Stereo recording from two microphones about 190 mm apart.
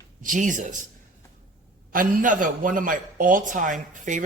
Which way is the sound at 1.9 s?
45° right (ahead or behind).